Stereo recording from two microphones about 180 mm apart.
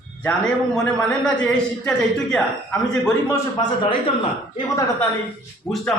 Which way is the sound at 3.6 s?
25° left (ahead or behind).